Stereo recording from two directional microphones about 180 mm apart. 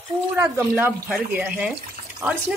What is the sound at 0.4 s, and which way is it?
Speech, 10° right (ahead or behind).